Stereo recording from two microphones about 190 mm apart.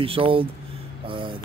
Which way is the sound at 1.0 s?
25° right (ahead or behind).